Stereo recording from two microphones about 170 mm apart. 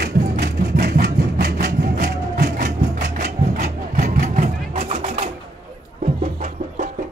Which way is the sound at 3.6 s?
45° right (ahead or behind).